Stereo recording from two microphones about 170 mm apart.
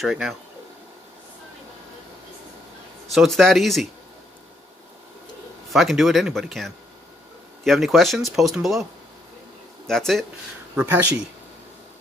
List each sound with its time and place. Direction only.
0.0 s speech: centre (ahead or behind)
3.1 s speech: centre (ahead or behind)
5.7 s speech: centre (ahead or behind)
9.8 s speech: centre (ahead or behind)